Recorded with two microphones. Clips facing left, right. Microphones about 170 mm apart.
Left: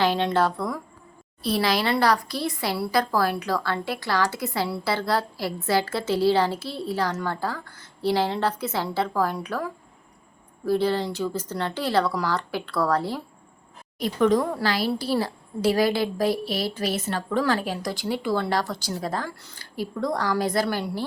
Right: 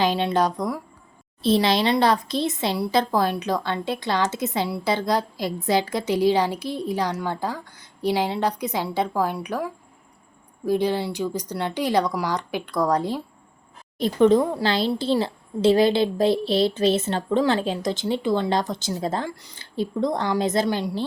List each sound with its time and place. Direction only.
0.0 s a woman's voice: 15° right (ahead or behind)